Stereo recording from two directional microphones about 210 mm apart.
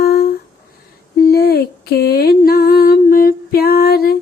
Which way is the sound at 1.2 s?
45° left (ahead or behind).